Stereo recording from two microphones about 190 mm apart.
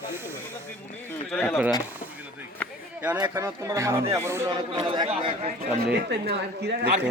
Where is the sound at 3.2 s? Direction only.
15° right (ahead or behind).